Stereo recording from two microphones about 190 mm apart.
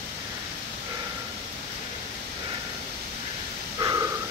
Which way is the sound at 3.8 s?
20° right (ahead or behind).